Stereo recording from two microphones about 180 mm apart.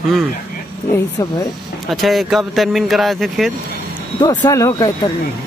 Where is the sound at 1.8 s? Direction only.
Centre (ahead or behind).